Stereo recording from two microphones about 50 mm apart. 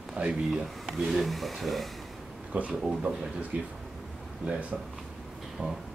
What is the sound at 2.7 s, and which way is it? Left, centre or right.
Speech, centre.